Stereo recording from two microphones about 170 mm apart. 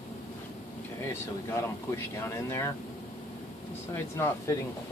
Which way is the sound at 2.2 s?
15° left (ahead or behind).